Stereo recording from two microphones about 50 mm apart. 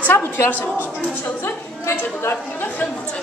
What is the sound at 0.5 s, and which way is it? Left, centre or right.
Speech, left.